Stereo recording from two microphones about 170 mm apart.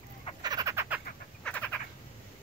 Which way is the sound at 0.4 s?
25° right (ahead or behind).